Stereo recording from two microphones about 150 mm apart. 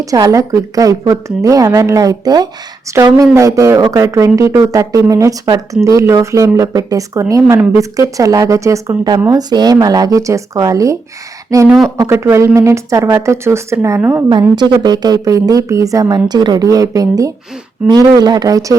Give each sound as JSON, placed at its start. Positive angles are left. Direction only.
{"t": 0.0, "sound": "a woman's voice", "side_deg": -25}
{"t": 14.5, "sound": "a woman's voice", "side_deg": -30}